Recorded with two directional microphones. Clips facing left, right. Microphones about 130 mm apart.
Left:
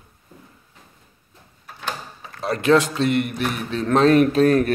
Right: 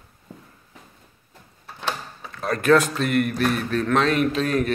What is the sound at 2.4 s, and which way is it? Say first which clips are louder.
Speech: left 1 dB; 15° left (ahead or behind).